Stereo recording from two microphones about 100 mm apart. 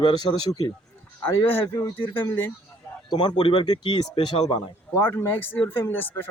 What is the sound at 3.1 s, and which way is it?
Speech, 45° left (ahead or behind).